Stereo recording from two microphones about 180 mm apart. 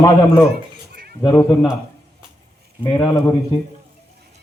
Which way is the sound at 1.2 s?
25° left (ahead or behind).